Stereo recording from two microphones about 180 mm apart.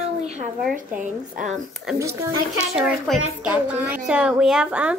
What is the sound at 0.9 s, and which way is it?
Speech, 45° right (ahead or behind).